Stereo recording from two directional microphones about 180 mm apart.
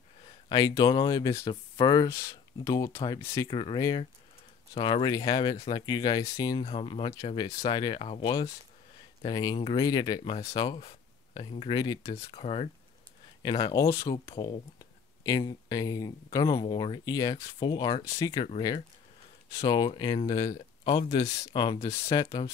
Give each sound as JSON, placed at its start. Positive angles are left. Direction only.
{"t": 0.5, "sound": "speech", "side_deg": 20}
{"t": 3.4, "sound": "speech", "side_deg": 25}
{"t": 6.6, "sound": "speech", "side_deg": 30}
{"t": 11.7, "sound": "speech", "side_deg": 20}
{"t": 12.3, "sound": "speech", "side_deg": 35}
{"t": 14.3, "sound": "speech", "side_deg": 30}
{"t": 14.8, "sound": "speech", "side_deg": 20}
{"t": 19.6, "sound": "speech", "side_deg": 20}